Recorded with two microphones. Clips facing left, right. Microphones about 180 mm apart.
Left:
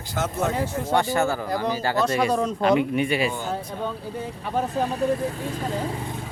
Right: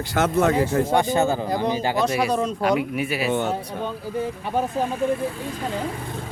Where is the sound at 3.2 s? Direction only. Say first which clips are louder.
Right 5 dB; 70° right (ahead or behind).